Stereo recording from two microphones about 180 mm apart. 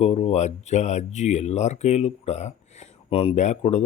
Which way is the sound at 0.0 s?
35° left (ahead or behind).